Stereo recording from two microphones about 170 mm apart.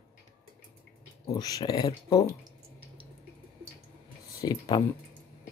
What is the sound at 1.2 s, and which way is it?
Speech, 20° left (ahead or behind).